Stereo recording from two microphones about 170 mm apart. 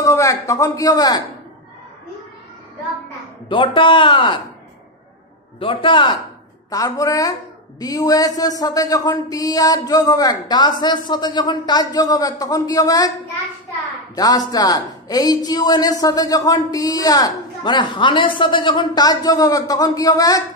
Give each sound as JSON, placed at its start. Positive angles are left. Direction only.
{"t": 0.0, "sound": "a man's voice", "side_deg": 20}
{"t": 3.4, "sound": "a man's voice", "side_deg": 30}
{"t": 5.6, "sound": "a man's voice", "side_deg": 30}
{"t": 14.1, "sound": "a man's voice", "side_deg": 20}